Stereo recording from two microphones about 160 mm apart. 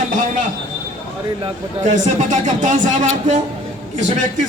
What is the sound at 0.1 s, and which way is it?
Train, 50° right (ahead or behind).